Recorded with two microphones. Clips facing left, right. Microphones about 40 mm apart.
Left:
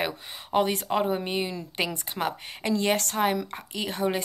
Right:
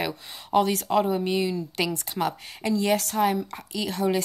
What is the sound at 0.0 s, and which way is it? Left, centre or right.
Speech, centre.